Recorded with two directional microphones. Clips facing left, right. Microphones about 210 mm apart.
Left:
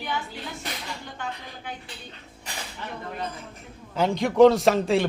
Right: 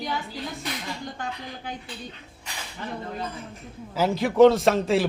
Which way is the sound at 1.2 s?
35° right (ahead or behind).